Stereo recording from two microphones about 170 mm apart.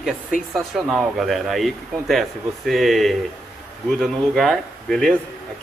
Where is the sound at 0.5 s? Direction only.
Centre (ahead or behind).